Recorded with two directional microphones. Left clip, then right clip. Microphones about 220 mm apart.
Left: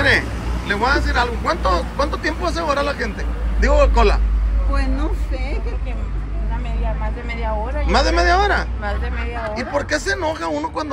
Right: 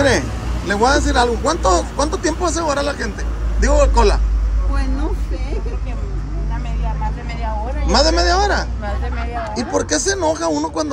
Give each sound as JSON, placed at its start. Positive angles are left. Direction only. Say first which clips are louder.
{"t": 0.7, "sound": "speech", "louder": "right 3 dB", "side_deg": -25}
{"t": 7.9, "sound": "speech", "louder": "right 1 dB", "side_deg": -15}